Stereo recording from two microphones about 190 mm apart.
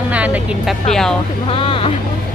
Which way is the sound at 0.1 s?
5° right (ahead or behind).